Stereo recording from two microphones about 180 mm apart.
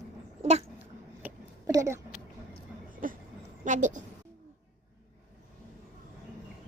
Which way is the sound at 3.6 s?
45° right (ahead or behind).